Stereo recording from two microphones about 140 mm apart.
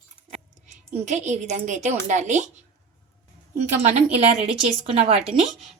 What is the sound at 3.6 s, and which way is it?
A woman's voice, 55° right (ahead or behind).